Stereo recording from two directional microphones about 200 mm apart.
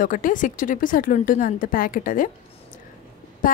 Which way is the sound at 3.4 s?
45° left (ahead or behind).